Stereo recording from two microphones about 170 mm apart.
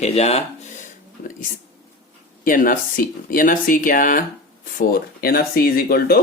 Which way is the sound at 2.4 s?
55° left (ahead or behind).